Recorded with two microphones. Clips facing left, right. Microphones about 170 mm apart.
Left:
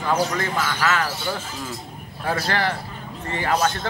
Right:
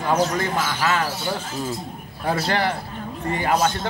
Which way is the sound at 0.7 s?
20° right (ahead or behind).